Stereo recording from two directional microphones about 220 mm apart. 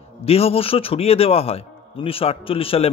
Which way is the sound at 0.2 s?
25° left (ahead or behind).